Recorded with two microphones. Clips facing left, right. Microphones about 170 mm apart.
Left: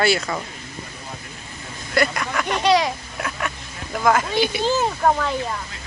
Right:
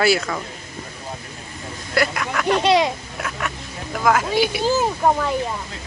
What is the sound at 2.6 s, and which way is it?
Speech, 25° right (ahead or behind).